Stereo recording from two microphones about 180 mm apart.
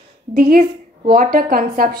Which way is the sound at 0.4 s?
55° right (ahead or behind).